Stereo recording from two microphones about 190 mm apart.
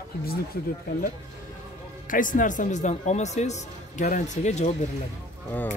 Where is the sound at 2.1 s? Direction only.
45° left (ahead or behind).